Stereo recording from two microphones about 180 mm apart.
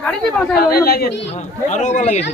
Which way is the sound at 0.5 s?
60° left (ahead or behind).